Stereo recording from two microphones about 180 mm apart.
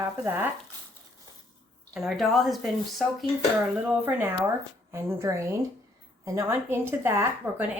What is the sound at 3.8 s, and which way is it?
Speech, 10° right (ahead or behind).